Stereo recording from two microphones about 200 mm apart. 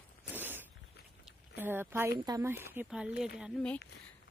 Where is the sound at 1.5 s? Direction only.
10° right (ahead or behind).